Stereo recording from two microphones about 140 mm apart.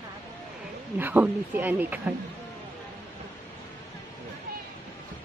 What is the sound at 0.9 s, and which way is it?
Speech, 10° right (ahead or behind).